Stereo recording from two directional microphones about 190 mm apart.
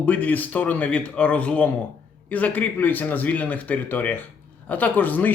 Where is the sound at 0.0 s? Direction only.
10° left (ahead or behind).